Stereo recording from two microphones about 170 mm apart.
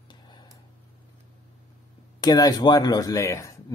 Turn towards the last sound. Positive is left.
turn(degrees=15)  # may be behind; listen again after turning